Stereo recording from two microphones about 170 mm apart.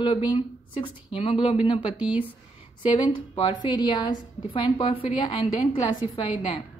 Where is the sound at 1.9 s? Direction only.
10° right (ahead or behind).